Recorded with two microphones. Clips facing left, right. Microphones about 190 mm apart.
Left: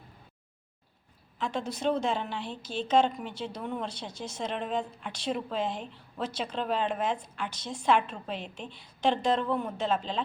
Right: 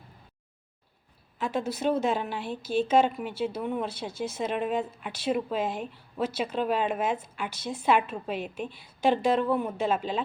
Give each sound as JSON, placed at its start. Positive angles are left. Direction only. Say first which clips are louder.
{"t": 1.4, "sound": "a woman's voice", "louder": "right 3 dB", "side_deg": -5}